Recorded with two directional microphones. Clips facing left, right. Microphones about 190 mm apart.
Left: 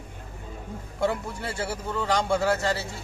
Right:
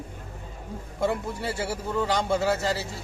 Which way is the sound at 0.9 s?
Centre (ahead or behind).